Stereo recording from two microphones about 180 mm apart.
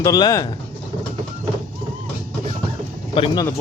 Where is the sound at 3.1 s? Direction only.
25° left (ahead or behind).